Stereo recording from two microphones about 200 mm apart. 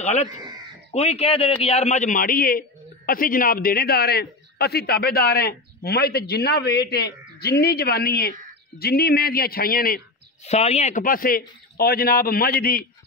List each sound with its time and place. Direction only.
0.0 s a man's voice: 35° left (ahead or behind)
10.4 s a man's voice: 30° left (ahead or behind); by 12.8 s 50° left (ahead or behind)